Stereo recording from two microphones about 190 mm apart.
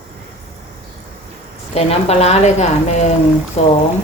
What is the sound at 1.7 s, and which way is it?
A woman's voice, 35° left (ahead or behind).